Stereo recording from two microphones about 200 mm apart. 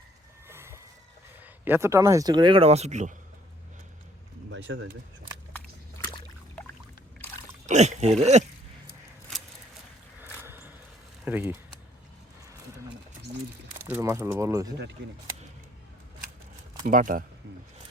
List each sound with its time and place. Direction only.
0.4 s a sound: 10° right (ahead or behind)
1.6 s speech: 10° right (ahead or behind); by 3.2 s 35° right (ahead or behind)
4.5 s speech: 65° right (ahead or behind)
6.0 s a sound: 15° left (ahead or behind)
7.7 s speech: 35° right (ahead or behind)
11.3 s speech: 10° right (ahead or behind)
13.8 s speech: 10° right (ahead or behind)
16.8 s speech: 40° right (ahead or behind)